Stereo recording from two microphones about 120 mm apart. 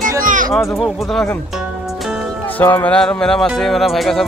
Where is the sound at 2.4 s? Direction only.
15° left (ahead or behind); by 4.2 s centre (ahead or behind).